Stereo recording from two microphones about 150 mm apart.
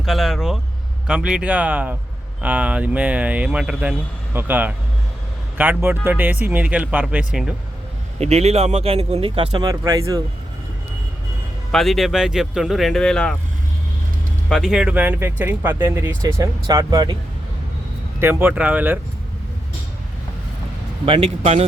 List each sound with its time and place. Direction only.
0.0 s speech: centre (ahead or behind)
8.2 s speech: 45° right (ahead or behind); by 10.2 s 25° right (ahead or behind)
11.7 s speech: centre (ahead or behind)
14.5 s speech: 5° right (ahead or behind); by 17.2 s 25° right (ahead or behind)
18.2 s speech: 15° right (ahead or behind)
21.0 s a man's voice: 40° right (ahead or behind)